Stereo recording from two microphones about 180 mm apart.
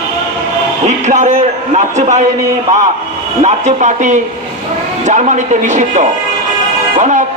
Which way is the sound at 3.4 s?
40° right (ahead or behind).